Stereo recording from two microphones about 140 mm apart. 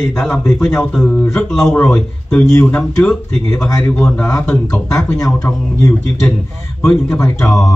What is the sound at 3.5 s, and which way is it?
Speech, 25° left (ahead or behind).